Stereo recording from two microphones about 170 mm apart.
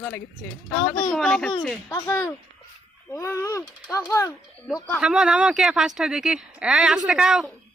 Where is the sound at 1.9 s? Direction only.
20° left (ahead or behind).